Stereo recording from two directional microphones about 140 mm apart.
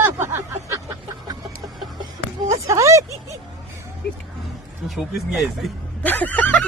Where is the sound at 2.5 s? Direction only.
20° right (ahead or behind).